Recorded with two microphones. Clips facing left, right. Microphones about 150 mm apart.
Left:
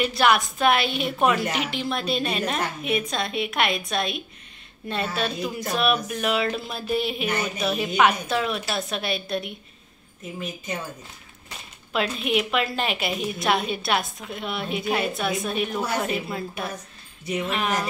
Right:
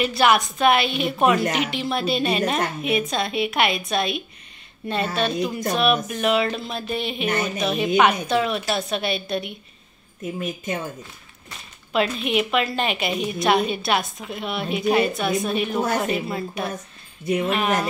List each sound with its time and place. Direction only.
0.0 s a woman's voice: centre (ahead or behind)
10.4 s a woman's voice: 50° right (ahead or behind)
11.9 s a woman's voice: centre (ahead or behind)